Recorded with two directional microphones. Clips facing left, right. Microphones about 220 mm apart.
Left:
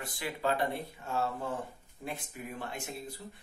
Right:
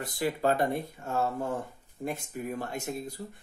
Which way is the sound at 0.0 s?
40° right (ahead or behind).